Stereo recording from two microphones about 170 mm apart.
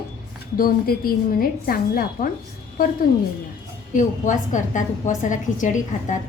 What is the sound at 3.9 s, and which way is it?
A woman's voice, 50° left (ahead or behind).